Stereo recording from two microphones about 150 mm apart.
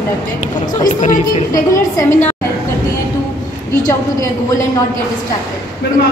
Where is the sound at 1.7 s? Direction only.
20° left (ahead or behind).